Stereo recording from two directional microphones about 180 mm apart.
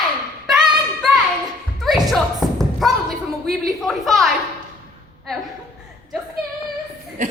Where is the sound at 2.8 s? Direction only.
Centre (ahead or behind).